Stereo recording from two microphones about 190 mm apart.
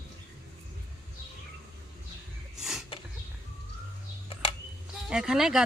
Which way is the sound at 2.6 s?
Centre (ahead or behind).